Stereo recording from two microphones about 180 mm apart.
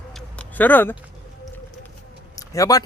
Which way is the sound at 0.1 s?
5° left (ahead or behind).